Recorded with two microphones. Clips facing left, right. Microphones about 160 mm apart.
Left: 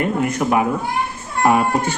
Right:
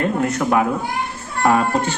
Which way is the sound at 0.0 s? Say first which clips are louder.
Even; 15° left (ahead or behind).